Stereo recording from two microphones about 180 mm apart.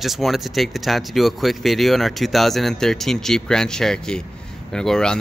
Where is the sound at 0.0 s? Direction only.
Centre (ahead or behind).